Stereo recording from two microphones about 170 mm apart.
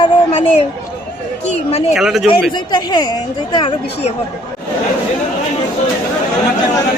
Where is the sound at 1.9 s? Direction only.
Centre (ahead or behind).